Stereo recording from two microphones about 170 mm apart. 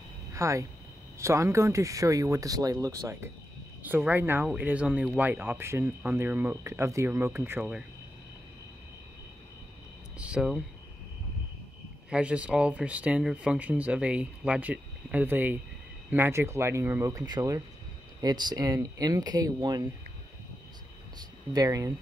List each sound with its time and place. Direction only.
0.3 s speech: 20° right (ahead or behind)
10.1 s a sound: 5° right (ahead or behind)
12.1 s speech: 5° right (ahead or behind); by 19.9 s 25° right (ahead or behind)
21.2 s speech: 20° right (ahead or behind)